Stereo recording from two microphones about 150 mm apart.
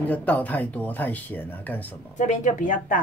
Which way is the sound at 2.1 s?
55° left (ahead or behind).